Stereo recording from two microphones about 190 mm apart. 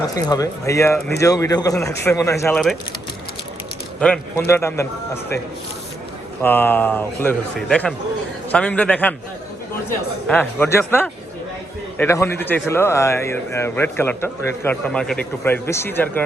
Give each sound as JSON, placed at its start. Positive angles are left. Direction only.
{"t": 0.1, "sound": "a man's voice", "side_deg": 20}
{"t": 4.0, "sound": "a man's voice", "side_deg": 10}
{"t": 6.4, "sound": "a man's voice", "side_deg": 10}
{"t": 10.2, "sound": "a man's voice", "side_deg": 10}